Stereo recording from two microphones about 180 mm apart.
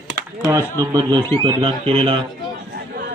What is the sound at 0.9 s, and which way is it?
Speech, 25° right (ahead or behind).